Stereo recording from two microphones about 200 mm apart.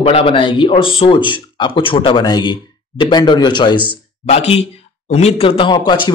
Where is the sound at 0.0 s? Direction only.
30° left (ahead or behind).